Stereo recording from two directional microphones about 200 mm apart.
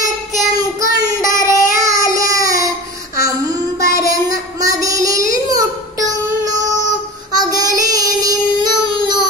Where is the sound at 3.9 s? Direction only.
15° right (ahead or behind).